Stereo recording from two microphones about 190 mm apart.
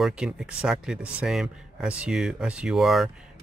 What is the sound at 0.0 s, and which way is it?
Speech, 5° right (ahead or behind).